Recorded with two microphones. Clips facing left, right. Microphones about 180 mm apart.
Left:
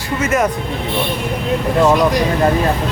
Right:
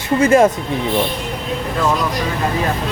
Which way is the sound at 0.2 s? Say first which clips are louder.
Right 5 dB; 30° right (ahead or behind).